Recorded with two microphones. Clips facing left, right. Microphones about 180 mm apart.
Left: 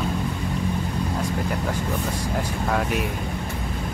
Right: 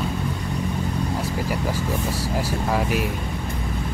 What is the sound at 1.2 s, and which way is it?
Speech, 5° right (ahead or behind).